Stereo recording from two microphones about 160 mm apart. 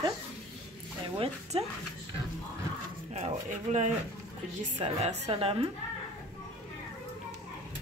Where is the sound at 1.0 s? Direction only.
35° right (ahead or behind).